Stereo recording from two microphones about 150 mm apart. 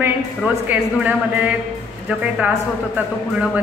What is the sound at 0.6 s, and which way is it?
Speech, 10° right (ahead or behind).